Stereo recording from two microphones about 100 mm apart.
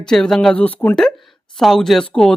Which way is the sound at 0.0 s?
5° left (ahead or behind).